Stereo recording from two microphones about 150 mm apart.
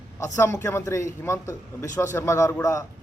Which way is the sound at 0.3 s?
20° left (ahead or behind).